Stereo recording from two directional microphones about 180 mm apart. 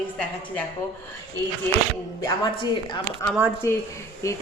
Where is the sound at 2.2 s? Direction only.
25° left (ahead or behind).